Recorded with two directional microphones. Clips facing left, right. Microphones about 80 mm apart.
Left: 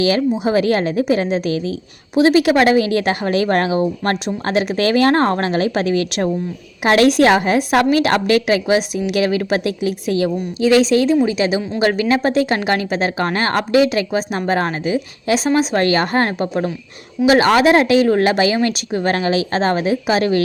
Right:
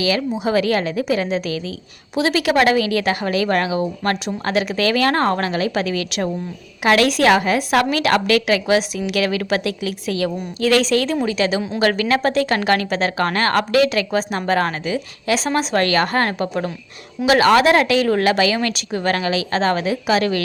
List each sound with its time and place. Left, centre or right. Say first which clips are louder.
0.4 s speech: even; left
10.2 s speech: left 2 dB; centre